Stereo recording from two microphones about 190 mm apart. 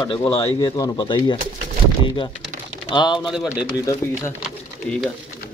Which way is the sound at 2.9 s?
25° left (ahead or behind).